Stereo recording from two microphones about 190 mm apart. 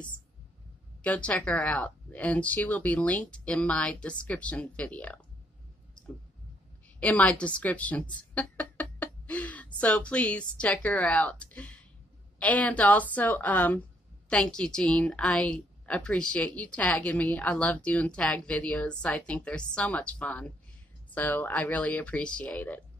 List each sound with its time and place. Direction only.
1.0 s a woman's voice: 5° left (ahead or behind)
7.0 s a woman's voice: 5° left (ahead or behind)